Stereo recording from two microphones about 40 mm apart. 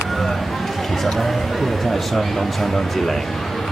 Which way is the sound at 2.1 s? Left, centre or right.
Centre.